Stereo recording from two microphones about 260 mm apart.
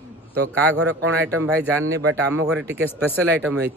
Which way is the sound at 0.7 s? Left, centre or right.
Right.